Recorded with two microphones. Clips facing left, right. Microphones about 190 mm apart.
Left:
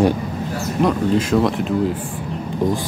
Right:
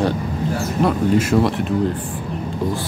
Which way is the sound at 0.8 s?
5° right (ahead or behind).